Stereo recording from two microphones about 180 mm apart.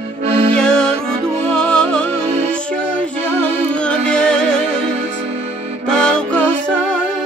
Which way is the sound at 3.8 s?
5° left (ahead or behind).